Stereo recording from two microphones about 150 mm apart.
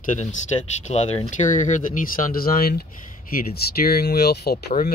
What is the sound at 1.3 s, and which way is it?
Speech, 55° left (ahead or behind).